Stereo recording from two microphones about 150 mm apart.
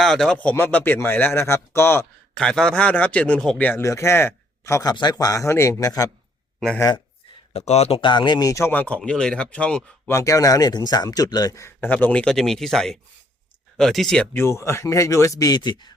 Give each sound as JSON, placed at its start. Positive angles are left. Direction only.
{"t": 0.0, "sound": "speech", "side_deg": 5}
{"t": 7.5, "sound": "speech", "side_deg": 45}
{"t": 10.1, "sound": "speech", "side_deg": 20}
{"t": 14.3, "sound": "speech", "side_deg": 20}